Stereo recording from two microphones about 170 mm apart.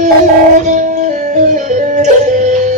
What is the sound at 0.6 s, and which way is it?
Music, 50° right (ahead or behind).